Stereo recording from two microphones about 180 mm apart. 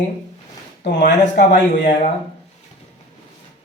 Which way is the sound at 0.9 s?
75° left (ahead or behind).